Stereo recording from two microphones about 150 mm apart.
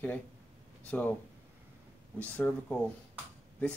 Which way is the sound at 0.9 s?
10° left (ahead or behind).